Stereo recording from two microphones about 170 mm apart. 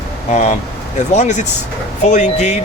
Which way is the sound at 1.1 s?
45° left (ahead or behind).